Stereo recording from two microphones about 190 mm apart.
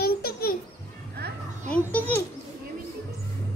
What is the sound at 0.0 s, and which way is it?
Babbling, 55° left (ahead or behind).